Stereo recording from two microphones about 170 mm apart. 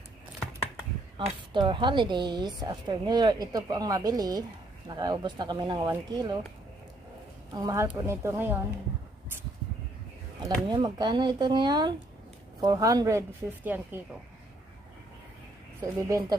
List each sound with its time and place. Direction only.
1.5 s a woman's voice: 30° right (ahead or behind)
7.5 s speech: 20° right (ahead or behind)
10.4 s a woman's voice: 25° right (ahead or behind)
15.8 s a woman's voice: 20° right (ahead or behind)